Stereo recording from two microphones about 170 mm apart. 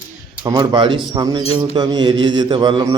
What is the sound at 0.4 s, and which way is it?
Speech, 25° right (ahead or behind).